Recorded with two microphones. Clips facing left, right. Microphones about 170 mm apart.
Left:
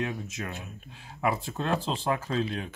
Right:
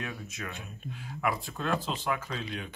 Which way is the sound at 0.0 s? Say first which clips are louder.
Left 6 dB; 25° left (ahead or behind).